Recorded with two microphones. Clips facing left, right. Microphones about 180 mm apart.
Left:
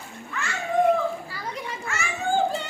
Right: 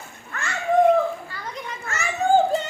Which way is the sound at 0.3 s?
50° right (ahead or behind).